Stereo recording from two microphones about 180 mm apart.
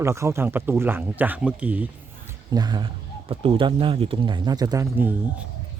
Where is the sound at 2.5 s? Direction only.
25° right (ahead or behind).